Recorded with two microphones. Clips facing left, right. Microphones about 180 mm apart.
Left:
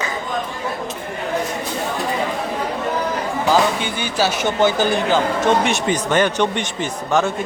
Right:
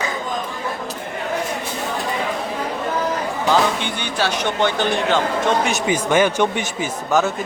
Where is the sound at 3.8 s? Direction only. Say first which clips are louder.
Left 2 dB; 5° left (ahead or behind).